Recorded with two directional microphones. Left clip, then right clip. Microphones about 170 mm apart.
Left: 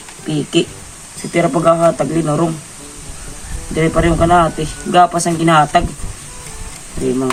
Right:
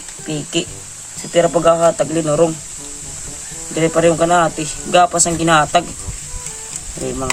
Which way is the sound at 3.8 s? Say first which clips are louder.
Even; 70° right (ahead or behind).